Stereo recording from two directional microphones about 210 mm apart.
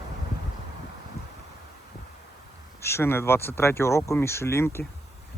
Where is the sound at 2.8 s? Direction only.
10° left (ahead or behind).